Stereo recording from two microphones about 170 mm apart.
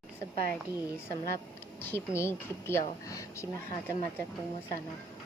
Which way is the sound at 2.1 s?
15° left (ahead or behind).